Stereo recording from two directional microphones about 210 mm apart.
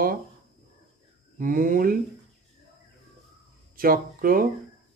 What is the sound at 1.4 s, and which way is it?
Speech, 40° right (ahead or behind).